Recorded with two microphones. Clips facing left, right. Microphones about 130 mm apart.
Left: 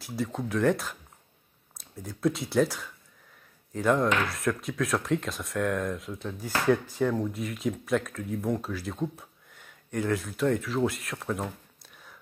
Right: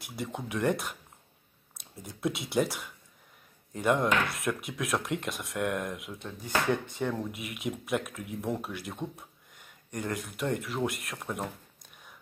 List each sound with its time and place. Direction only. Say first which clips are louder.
0.0 s speech: left 5 dB; centre (ahead or behind)
2.0 s speech: left 5 dB; centre (ahead or behind)